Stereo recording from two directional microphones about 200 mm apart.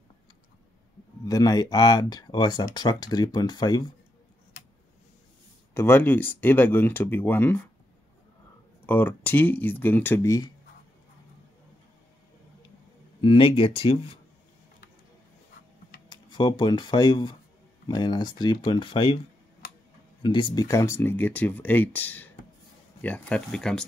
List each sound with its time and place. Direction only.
1.2 s speech: 15° left (ahead or behind)
5.8 s speech: 10° left (ahead or behind)
8.8 s speech: 10° left (ahead or behind)
13.2 s speech: 25° left (ahead or behind)
16.1 s speech: 25° left (ahead or behind)
20.2 s speech: 25° left (ahead or behind); by 23.9 s 5° left (ahead or behind)